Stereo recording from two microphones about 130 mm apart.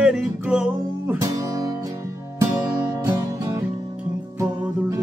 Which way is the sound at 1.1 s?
25° right (ahead or behind).